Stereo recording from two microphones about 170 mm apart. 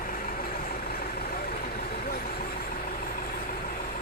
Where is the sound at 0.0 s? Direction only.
60° left (ahead or behind).